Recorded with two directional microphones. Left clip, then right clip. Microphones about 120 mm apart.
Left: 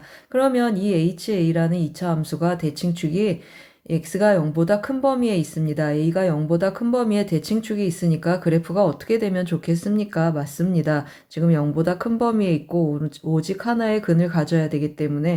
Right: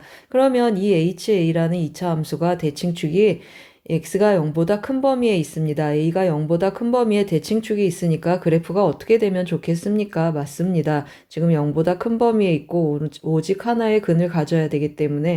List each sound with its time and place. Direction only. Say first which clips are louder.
0.3 s speech: right 3 dB; 35° right (ahead or behind)